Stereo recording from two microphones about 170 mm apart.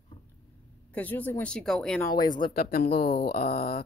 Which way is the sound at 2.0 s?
20° left (ahead or behind).